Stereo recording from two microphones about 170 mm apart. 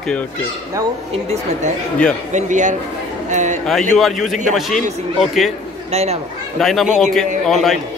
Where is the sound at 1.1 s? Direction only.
40° right (ahead or behind).